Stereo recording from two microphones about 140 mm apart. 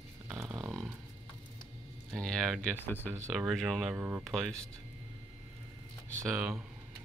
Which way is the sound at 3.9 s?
15° right (ahead or behind).